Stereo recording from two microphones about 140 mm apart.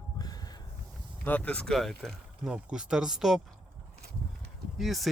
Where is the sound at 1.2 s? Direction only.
10° left (ahead or behind).